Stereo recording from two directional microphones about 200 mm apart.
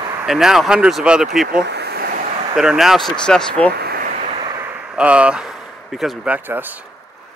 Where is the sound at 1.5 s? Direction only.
55° right (ahead or behind).